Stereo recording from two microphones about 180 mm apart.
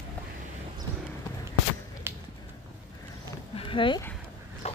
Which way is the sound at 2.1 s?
10° right (ahead or behind).